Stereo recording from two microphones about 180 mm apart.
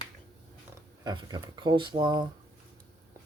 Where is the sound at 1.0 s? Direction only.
25° right (ahead or behind).